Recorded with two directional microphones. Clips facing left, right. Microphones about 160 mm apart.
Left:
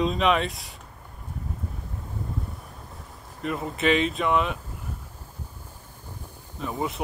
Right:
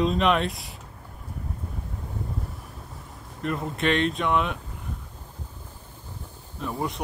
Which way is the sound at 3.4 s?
Centre (ahead or behind).